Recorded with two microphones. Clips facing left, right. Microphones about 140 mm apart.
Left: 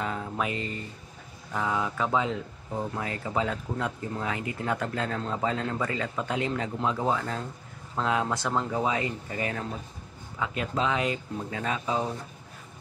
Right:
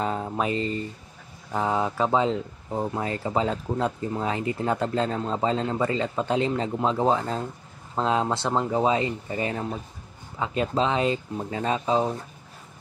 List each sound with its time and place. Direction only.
0.0 s speech: 30° right (ahead or behind)